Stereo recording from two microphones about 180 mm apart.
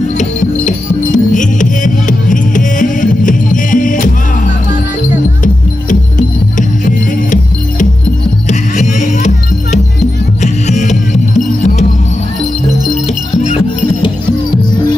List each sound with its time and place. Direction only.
0.2 s music: 45° left (ahead or behind)
5.4 s music: 45° left (ahead or behind)
8.5 s music: 40° left (ahead or behind)